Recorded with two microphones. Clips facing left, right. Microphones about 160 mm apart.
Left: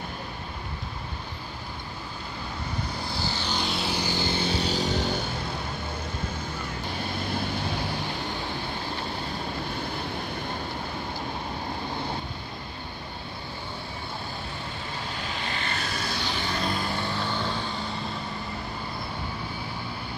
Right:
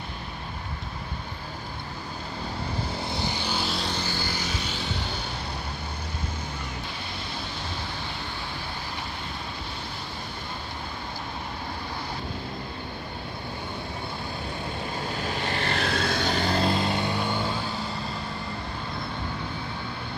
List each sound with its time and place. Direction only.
3.0 s vehicle: 20° right (ahead or behind); by 5.2 s 40° left (ahead or behind)
15.4 s vehicle: 45° right (ahead or behind)
15.7 s vehicle: 65° right (ahead or behind); by 17.6 s 10° right (ahead or behind)